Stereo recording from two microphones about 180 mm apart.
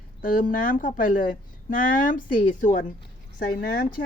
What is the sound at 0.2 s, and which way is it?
Speech, 50° left (ahead or behind).